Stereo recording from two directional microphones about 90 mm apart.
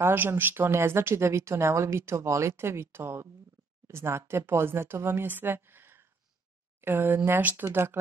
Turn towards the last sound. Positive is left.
turn(degrees=-25)  # may be behind; listen again after turning